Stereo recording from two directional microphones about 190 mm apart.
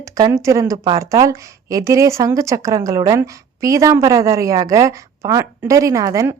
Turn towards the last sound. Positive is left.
turn(degrees=-15)  # may be behind; listen again after turning